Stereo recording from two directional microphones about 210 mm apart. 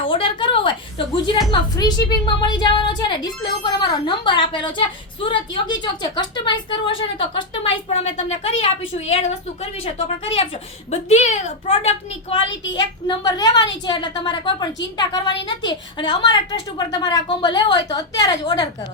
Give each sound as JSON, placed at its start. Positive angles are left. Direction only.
{"t": 0.0, "sound": "a sound", "side_deg": 25}
{"t": 1.7, "sound": "a woman's voice", "side_deg": 20}
{"t": 9.8, "sound": "a woman's voice", "side_deg": 25}
{"t": 12.4, "sound": "a child's voice", "side_deg": 60}
{"t": 12.7, "sound": "a woman's voice", "side_deg": 20}